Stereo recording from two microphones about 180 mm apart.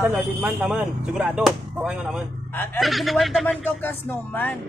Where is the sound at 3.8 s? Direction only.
10° left (ahead or behind).